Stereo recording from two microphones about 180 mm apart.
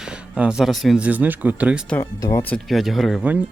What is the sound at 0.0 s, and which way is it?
Speech, 5° right (ahead or behind).